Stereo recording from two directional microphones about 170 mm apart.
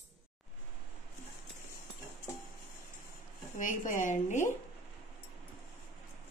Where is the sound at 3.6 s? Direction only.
50° left (ahead or behind).